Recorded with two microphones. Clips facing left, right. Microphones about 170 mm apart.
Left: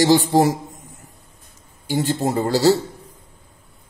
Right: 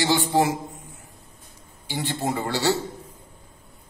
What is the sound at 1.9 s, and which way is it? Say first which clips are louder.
Speech: left 6 dB; 45° left (ahead or behind).